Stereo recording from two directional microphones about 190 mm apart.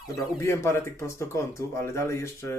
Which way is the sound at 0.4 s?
15° left (ahead or behind).